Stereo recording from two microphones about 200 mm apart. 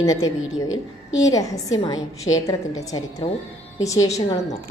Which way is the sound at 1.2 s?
15° left (ahead or behind).